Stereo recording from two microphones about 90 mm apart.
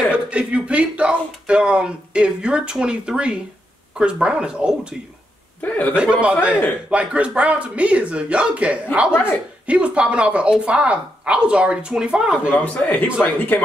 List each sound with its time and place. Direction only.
0.1 s speech: 15° right (ahead or behind)
5.6 s a man's voice: 20° left (ahead or behind)
5.9 s speech: 10° right (ahead or behind)
12.5 s a man's voice: 20° left (ahead or behind)